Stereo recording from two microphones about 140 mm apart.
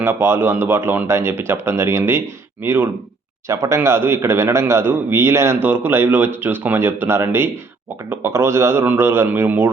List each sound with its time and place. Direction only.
0.0 s a man's voice: 15° right (ahead or behind)